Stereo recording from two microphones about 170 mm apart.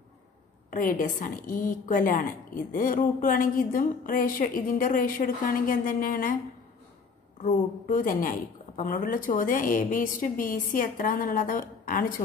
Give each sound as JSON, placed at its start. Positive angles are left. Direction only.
{"t": 0.7, "sound": "a woman's voice", "side_deg": 50}
{"t": 7.9, "sound": "a woman's voice", "side_deg": 55}